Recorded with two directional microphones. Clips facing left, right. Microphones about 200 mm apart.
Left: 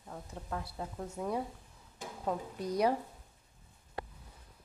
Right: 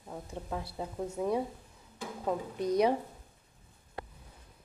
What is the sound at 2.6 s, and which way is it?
Speech, 20° right (ahead or behind).